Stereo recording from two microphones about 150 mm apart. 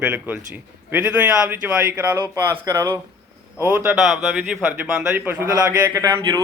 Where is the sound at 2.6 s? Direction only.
20° right (ahead or behind).